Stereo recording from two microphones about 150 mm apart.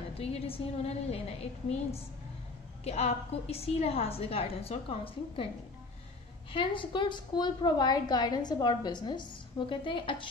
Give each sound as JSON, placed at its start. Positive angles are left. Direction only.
{"t": 0.2, "sound": "a woman's voice", "side_deg": 40}
{"t": 6.5, "sound": "a woman's voice", "side_deg": 35}